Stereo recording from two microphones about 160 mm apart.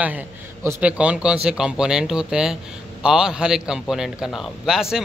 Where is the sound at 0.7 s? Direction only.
10° right (ahead or behind).